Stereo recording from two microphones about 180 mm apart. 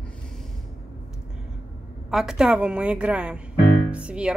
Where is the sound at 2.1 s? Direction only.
5° right (ahead or behind).